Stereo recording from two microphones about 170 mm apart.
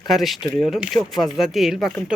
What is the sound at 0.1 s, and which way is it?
A man's voice, centre (ahead or behind).